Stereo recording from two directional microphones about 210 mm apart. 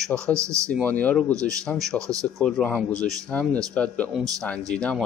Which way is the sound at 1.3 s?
15° right (ahead or behind).